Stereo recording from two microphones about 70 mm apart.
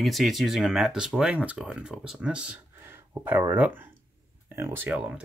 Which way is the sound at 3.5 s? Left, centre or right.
Right.